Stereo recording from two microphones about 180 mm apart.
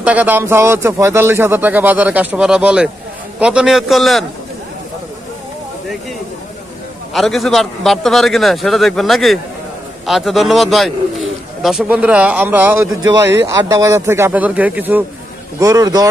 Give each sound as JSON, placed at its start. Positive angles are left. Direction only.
{"t": 0.0, "sound": "speech", "side_deg": -10}
{"t": 7.2, "sound": "speech", "side_deg": 0}